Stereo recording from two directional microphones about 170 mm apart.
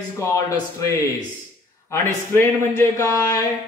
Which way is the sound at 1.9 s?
15° left (ahead or behind).